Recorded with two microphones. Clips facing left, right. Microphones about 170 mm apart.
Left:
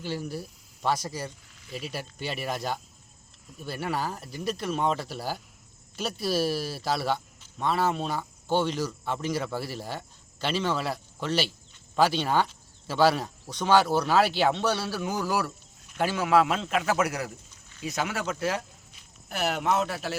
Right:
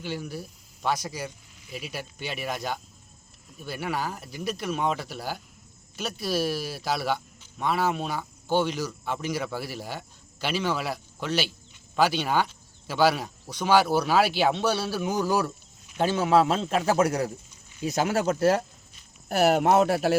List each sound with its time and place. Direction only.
0.0 s speech: centre (ahead or behind)
6.4 s a man's voice: centre (ahead or behind); by 17.2 s 35° right (ahead or behind)
17.2 s a sound: 15° right (ahead or behind)
17.9 s a man's voice: 35° right (ahead or behind)
19.7 s a man's voice: 45° right (ahead or behind)